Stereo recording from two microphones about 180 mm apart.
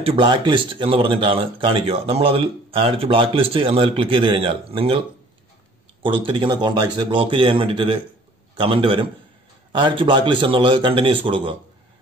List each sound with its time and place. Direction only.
0.0 s speech: 30° right (ahead or behind)
6.0 s speech: 30° right (ahead or behind)